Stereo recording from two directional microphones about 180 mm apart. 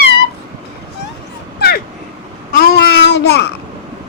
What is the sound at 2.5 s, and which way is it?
Child singing, 60° left (ahead or behind).